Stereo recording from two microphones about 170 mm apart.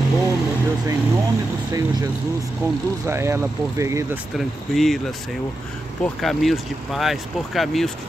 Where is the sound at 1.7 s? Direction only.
20° right (ahead or behind).